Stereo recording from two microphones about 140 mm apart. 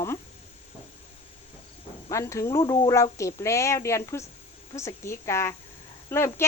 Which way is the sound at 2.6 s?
35° left (ahead or behind).